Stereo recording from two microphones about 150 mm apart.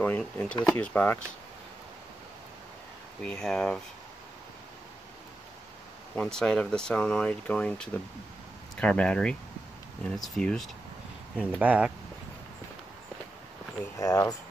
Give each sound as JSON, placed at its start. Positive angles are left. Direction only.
{"t": 0.2, "sound": "speech", "side_deg": 10}
{"t": 3.3, "sound": "speech", "side_deg": 5}
{"t": 6.1, "sound": "speech", "side_deg": 5}
{"t": 11.3, "sound": "speech", "side_deg": -10}
{"t": 13.9, "sound": "speech", "side_deg": 20}